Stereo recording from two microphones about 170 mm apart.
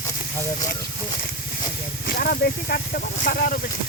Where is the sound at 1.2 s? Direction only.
55° left (ahead or behind).